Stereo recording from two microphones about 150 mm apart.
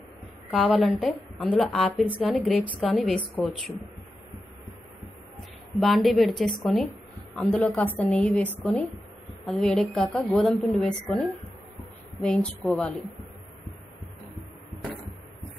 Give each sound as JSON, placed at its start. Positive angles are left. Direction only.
{"t": 0.5, "sound": "a woman's voice", "side_deg": 0}
{"t": 3.4, "sound": "speech", "side_deg": 15}
{"t": 5.8, "sound": "a woman's voice", "side_deg": 0}